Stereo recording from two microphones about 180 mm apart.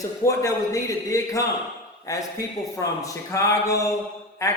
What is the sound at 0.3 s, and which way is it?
Speech, 20° left (ahead or behind).